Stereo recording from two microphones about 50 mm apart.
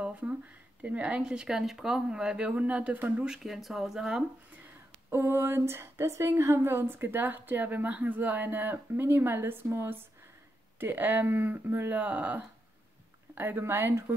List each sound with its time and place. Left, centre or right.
0.0 s a sound: right
0.8 s a woman's voice: right
3.3 s speech: centre
5.1 s a woman's voice: right
13.3 s a woman's voice: right